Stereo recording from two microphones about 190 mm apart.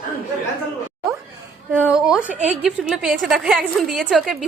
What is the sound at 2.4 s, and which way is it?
A woman's voice, 5° right (ahead or behind).